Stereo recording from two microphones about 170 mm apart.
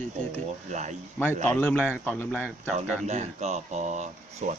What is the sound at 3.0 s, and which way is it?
Speech, 40° right (ahead or behind).